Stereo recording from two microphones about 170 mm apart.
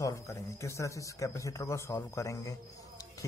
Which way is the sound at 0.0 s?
15° left (ahead or behind).